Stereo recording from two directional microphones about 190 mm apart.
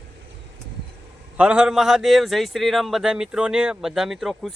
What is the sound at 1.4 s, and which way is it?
A man's voice, 5° right (ahead or behind).